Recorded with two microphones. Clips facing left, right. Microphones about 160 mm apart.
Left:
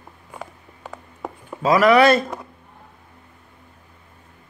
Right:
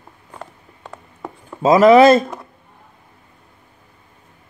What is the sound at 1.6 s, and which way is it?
Speech, 25° right (ahead or behind).